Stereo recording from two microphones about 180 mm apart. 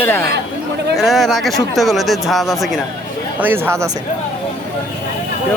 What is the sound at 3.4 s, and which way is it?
Speech, 10° right (ahead or behind).